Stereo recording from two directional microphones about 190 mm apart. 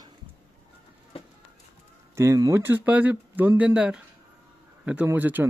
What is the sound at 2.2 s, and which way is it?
Speech, 15° right (ahead or behind).